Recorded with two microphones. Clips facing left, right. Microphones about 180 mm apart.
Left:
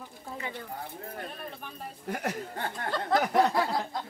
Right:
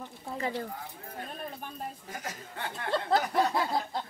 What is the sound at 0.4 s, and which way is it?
Speech, 35° right (ahead or behind).